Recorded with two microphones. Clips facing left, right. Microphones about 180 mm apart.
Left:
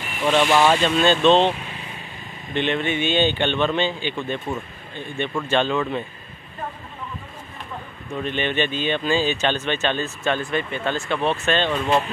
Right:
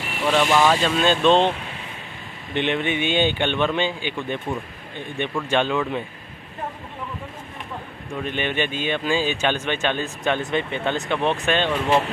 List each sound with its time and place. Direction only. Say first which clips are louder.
0.2 s speech: left 1 dB; 10° right (ahead or behind)
0.5 s speech: left 1 dB; 10° left (ahead or behind)
0.7 s speech: left 2 dB; 5° right (ahead or behind)
2.5 s speech: even; 15° right (ahead or behind)
8.1 s speech: left 1 dB; 10° right (ahead or behind)